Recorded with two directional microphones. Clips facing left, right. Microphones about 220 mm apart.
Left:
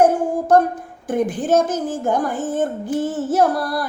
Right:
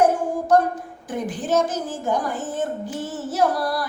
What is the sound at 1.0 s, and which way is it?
Child singing, 50° left (ahead or behind).